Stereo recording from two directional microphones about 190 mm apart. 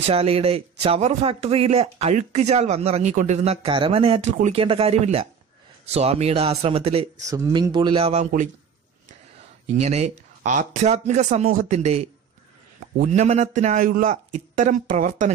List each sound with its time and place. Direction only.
0.0 s speech: 30° right (ahead or behind)
7.2 s speech: 15° right (ahead or behind); by 8.3 s 30° right (ahead or behind)
9.8 s speech: 35° right (ahead or behind)
13.1 s speech: 35° right (ahead or behind)